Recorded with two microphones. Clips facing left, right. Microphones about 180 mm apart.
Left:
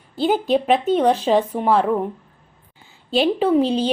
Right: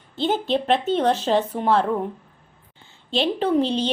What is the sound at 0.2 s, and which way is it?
Speech, 10° left (ahead or behind).